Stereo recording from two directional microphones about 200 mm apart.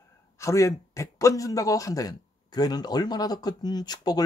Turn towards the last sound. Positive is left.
turn(degrees=20)  # may be behind; listen again after turning